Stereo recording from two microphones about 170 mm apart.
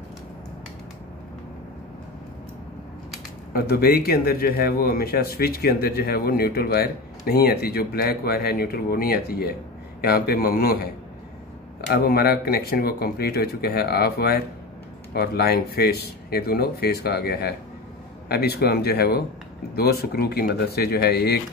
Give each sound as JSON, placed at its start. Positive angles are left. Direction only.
{"t": 3.5, "sound": "speech", "side_deg": 65}
{"t": 11.9, "sound": "speech", "side_deg": 65}